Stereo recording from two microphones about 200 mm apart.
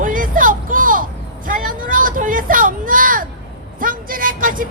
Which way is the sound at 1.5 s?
45° right (ahead or behind).